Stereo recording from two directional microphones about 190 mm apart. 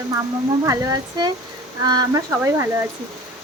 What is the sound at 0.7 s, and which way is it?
Speech, 20° right (ahead or behind).